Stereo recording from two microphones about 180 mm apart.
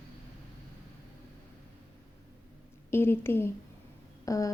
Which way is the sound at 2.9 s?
15° left (ahead or behind).